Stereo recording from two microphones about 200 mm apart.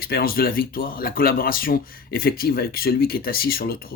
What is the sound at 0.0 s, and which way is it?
Speech, 50° left (ahead or behind).